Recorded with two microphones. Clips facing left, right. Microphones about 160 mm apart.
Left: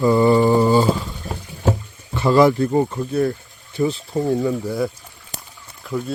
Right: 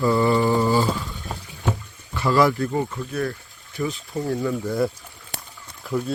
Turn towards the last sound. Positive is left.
turn(degrees=0)  # may be behind; listen again after turning